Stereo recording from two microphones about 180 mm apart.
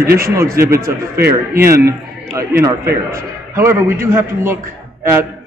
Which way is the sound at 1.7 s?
15° right (ahead or behind).